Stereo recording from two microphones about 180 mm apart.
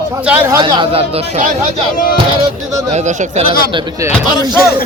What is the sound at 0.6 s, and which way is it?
Speech, 25° right (ahead or behind).